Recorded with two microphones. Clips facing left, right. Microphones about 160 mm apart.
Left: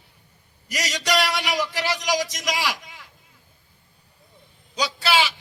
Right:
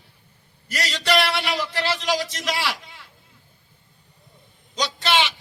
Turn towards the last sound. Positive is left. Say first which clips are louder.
# even
turn(degrees=5)  # may be behind; listen again after turning